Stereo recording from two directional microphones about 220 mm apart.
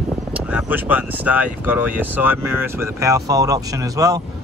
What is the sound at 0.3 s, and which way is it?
Speech, 5° right (ahead or behind).